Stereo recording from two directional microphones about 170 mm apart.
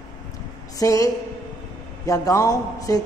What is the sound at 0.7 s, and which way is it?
A man's voice, 20° left (ahead or behind).